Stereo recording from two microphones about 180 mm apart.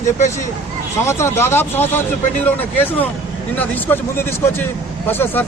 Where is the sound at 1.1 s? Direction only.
15° left (ahead or behind).